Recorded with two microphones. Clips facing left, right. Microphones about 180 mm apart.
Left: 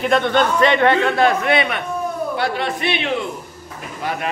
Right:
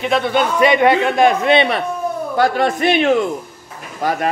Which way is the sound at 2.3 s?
45° right (ahead or behind).